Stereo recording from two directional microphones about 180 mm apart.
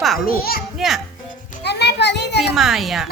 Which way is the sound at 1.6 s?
70° left (ahead or behind).